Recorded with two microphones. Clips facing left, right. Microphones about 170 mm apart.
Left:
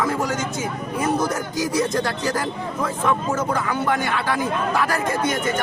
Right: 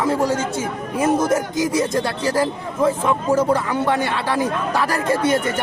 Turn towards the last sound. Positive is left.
turn(degrees=-30)  # may be behind; listen again after turning